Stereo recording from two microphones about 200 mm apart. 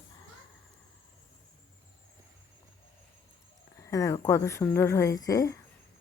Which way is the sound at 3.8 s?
15° left (ahead or behind).